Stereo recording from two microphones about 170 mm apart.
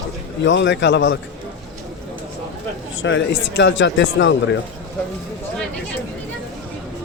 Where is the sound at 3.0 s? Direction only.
90° left.